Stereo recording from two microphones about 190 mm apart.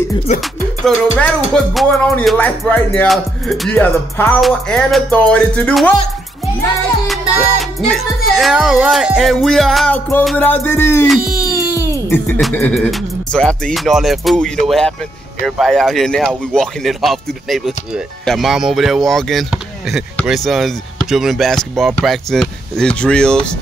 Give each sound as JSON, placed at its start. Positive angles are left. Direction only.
{"t": 0.3, "sound": "music", "side_deg": 40}
{"t": 0.8, "sound": "speech", "side_deg": 5}
{"t": 8.4, "sound": "speech", "side_deg": 0}
{"t": 10.2, "sound": "music", "side_deg": 10}
{"t": 11.1, "sound": "music", "side_deg": -5}
{"t": 11.7, "sound": "wail", "side_deg": 15}
{"t": 12.5, "sound": "speech", "side_deg": 5}